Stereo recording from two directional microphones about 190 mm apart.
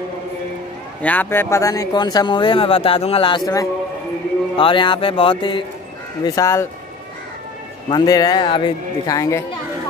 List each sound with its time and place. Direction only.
1.0 s speech: 10° left (ahead or behind)
7.9 s speech: 20° left (ahead or behind)